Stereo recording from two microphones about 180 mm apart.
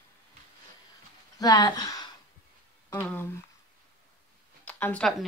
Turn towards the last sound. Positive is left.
turn(degrees=5)  # may be behind; listen again after turning